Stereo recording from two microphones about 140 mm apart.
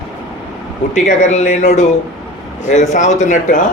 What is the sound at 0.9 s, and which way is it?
A man's voice, 60° left (ahead or behind).